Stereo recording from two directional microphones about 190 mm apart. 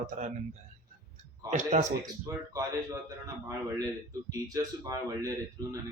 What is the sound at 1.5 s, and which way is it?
Speech, 40° right (ahead or behind).